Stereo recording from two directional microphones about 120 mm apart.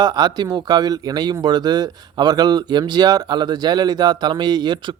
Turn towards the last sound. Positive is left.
turn(degrees=-35)  # may be behind; listen again after turning